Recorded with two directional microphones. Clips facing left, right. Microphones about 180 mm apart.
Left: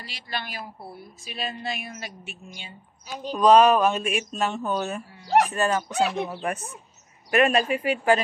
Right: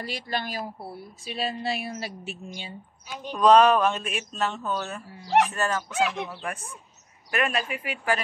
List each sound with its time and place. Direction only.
0.0 s a woman's voice: 45° right (ahead or behind)
3.3 s speech: 5° left (ahead or behind)
5.9 s speech: 35° left (ahead or behind)
6.4 s speech: 20° left (ahead or behind)